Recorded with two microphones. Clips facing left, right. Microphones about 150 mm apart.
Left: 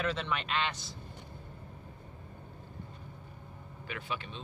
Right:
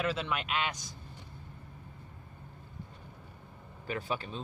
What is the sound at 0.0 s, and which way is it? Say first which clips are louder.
Speech: right 1 dB; 5° right (ahead or behind).